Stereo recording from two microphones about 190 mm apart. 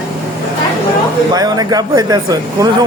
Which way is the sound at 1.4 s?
20° right (ahead or behind).